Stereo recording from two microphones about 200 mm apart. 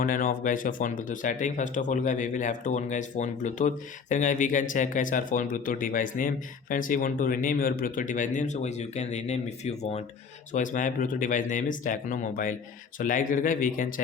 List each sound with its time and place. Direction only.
0.0 s speech: 45° left (ahead or behind)